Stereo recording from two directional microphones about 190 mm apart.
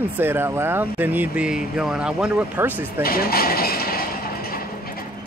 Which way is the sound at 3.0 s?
50° left (ahead or behind).